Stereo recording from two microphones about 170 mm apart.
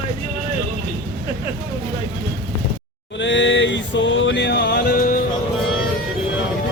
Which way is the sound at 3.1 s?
90° left.